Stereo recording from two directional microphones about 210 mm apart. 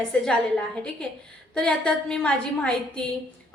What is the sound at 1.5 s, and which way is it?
A woman's voice, 5° left (ahead or behind).